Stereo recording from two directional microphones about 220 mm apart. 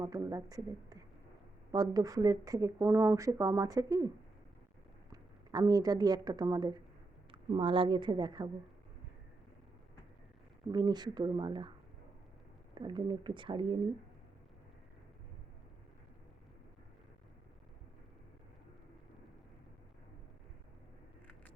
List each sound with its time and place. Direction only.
0.0 s speech: 15° right (ahead or behind)
5.1 s a woman's voice: 15° right (ahead or behind)
10.7 s speech: 20° right (ahead or behind)
12.7 s speech: 20° right (ahead or behind)